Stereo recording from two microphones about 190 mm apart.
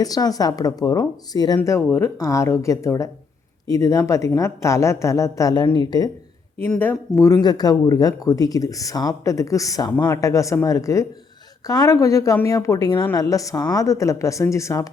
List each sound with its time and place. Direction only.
0.0 s speech: 20° left (ahead or behind)
6.6 s speech: 10° left (ahead or behind)